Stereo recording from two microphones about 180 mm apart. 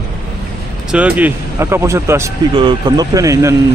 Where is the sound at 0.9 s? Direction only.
5° right (ahead or behind).